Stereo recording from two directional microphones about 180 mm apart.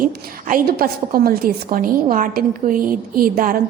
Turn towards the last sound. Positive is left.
turn(degrees=-50)  # may be behind; listen again after turning